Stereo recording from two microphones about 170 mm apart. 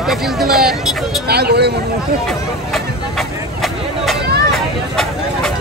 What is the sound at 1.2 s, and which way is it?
Speech, 70° right (ahead or behind).